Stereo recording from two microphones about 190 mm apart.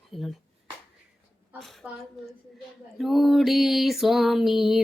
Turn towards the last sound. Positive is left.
turn(degrees=0)  # may be behind; listen again after turning